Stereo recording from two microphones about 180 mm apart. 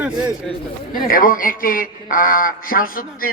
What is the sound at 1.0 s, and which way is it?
Speech, 50° left (ahead or behind).